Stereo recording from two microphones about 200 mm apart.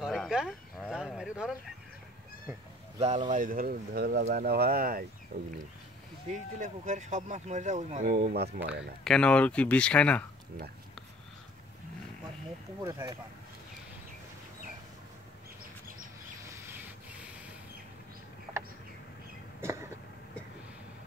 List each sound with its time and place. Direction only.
0.0 s a sound: centre (ahead or behind)
3.0 s speech: 35° right (ahead or behind)
6.3 s speech: 35° right (ahead or behind)
9.0 s speech: 5° left (ahead or behind)
12.8 s speech: 15° right (ahead or behind)
19.6 s a sound: 15° right (ahead or behind)